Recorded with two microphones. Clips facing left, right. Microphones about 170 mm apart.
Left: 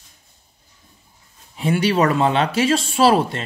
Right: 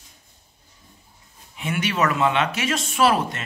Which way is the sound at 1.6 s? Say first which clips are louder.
Left 6 dB; 35° left (ahead or behind).